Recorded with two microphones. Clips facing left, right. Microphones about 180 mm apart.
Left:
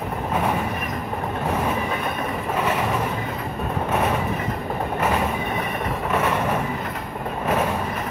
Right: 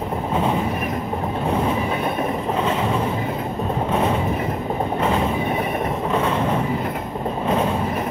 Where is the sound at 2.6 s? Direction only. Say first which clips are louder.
Right 1 dB; 10° left (ahead or behind).